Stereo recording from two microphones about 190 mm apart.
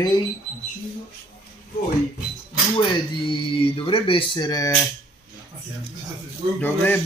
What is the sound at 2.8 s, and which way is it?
Speech, 25° left (ahead or behind).